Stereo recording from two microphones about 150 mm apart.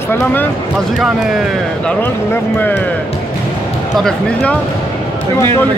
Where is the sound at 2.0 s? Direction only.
10° left (ahead or behind).